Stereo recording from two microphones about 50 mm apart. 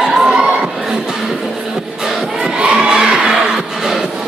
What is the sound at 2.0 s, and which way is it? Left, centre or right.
Crowd, centre.